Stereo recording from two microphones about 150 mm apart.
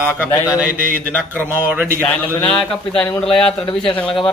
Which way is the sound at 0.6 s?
10° right (ahead or behind).